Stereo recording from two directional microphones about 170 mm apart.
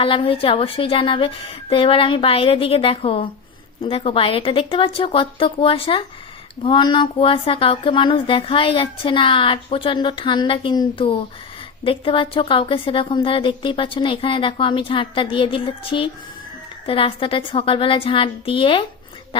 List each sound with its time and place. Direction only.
0.0 s speech: 30° left (ahead or behind)